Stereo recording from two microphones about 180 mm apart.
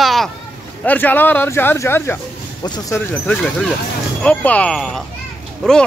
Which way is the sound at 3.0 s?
10° left (ahead or behind).